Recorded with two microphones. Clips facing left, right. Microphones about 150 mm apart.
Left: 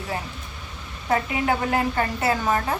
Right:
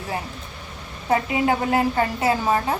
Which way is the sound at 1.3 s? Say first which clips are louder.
Right 3 dB; 20° right (ahead or behind).